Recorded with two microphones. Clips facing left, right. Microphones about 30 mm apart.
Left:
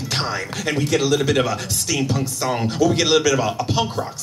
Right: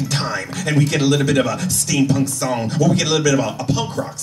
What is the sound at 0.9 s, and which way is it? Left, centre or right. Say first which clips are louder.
Speech: left 1 dB; right.